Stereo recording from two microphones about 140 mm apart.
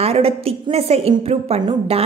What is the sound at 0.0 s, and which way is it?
A woman's voice, 45° right (ahead or behind).